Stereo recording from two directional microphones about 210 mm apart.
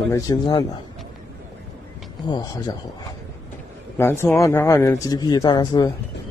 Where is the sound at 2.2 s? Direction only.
20° left (ahead or behind).